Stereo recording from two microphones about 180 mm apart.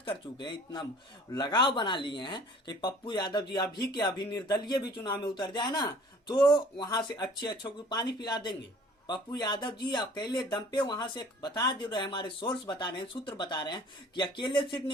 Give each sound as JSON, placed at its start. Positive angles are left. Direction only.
{"t": 0.0, "sound": "speech", "side_deg": 25}